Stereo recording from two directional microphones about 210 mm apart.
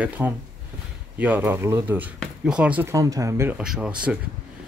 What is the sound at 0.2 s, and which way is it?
Speech, 10° right (ahead or behind).